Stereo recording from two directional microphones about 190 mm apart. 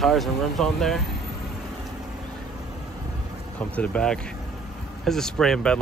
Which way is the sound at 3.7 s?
5° left (ahead or behind).